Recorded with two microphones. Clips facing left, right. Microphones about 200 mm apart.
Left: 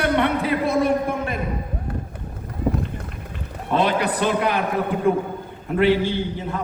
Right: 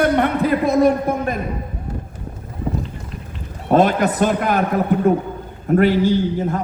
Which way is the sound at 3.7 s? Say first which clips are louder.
Right 5 dB; 45° right (ahead or behind).